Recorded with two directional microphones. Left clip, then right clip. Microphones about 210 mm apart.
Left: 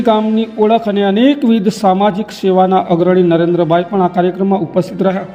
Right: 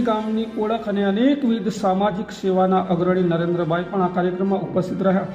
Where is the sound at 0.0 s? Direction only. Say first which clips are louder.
Left 10 dB; 30° left (ahead or behind).